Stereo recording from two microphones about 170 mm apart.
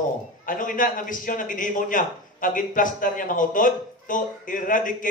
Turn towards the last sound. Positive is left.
turn(degrees=50)  # may be behind; listen again after turning